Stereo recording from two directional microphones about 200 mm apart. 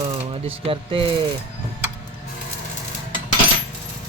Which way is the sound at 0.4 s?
25° right (ahead or behind).